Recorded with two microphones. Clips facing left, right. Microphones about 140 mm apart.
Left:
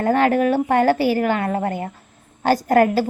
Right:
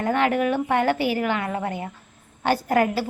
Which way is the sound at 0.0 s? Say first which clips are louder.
Left 4 dB; 40° left (ahead or behind).